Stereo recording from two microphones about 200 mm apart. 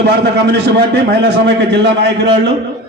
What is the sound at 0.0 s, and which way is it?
A man's voice, 55° right (ahead or behind).